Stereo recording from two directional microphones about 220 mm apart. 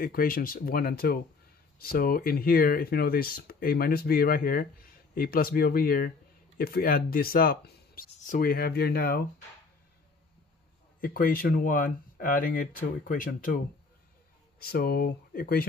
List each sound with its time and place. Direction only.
0.0 s speech: 40° left (ahead or behind)
11.0 s speech: 40° left (ahead or behind)
14.6 s speech: 45° left (ahead or behind)